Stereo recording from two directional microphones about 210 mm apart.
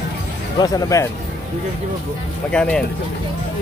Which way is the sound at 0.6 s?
15° left (ahead or behind).